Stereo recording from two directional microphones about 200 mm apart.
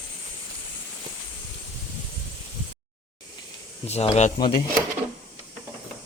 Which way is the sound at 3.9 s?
30° left (ahead or behind).